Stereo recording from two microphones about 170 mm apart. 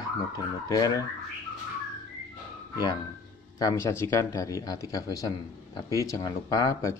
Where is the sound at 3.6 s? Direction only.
15° left (ahead or behind).